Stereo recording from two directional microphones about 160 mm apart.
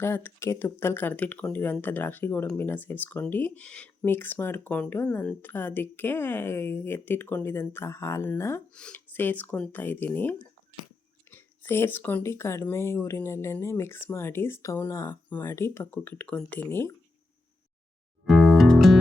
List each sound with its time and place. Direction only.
0.0 s speech: 15° left (ahead or behind)
18.3 s music: centre (ahead or behind)